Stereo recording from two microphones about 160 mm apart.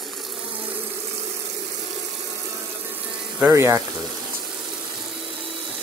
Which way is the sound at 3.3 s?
15° right (ahead or behind).